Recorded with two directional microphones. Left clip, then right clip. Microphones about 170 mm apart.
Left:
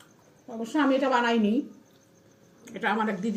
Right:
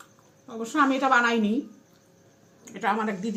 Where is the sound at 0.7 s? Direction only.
35° right (ahead or behind).